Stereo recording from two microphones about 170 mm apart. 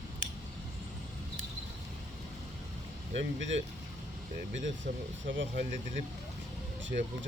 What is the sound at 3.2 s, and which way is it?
Speech, 90° right.